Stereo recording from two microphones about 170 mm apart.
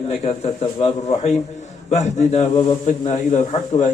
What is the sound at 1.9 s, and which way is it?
Speech, 40° left (ahead or behind).